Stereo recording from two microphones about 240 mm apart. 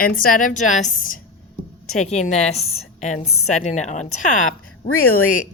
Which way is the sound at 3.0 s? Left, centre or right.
Left.